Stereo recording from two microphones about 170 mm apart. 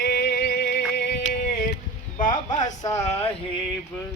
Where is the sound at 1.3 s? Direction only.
60° left (ahead or behind).